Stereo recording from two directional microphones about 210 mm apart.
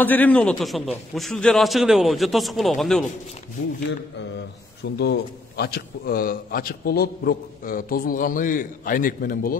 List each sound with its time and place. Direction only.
0.0 s a man's voice: 10° left (ahead or behind)
4.9 s a man's voice: 50° left (ahead or behind)